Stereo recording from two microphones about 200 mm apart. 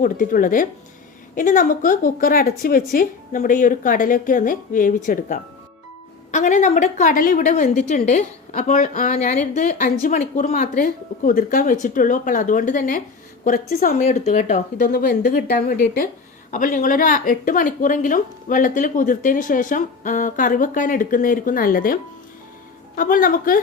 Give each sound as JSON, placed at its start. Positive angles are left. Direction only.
{"t": 0.0, "sound": "a woman's voice", "side_deg": 45}
{"t": 23.0, "sound": "speech", "side_deg": 45}